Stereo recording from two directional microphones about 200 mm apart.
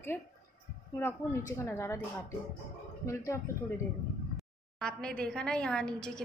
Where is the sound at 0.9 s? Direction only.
10° left (ahead or behind).